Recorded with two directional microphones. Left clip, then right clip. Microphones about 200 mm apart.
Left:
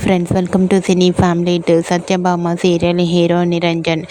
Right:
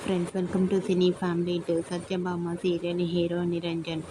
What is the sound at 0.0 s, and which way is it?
A woman's voice, 45° left (ahead or behind).